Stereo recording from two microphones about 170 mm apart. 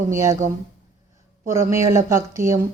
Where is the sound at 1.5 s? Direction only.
15° right (ahead or behind).